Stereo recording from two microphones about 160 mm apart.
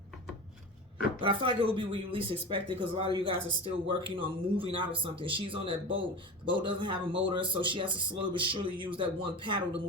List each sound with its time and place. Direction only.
1.2 s speech: 30° right (ahead or behind)